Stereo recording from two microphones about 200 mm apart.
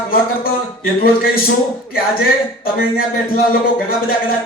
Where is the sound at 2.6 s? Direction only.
45° left (ahead or behind).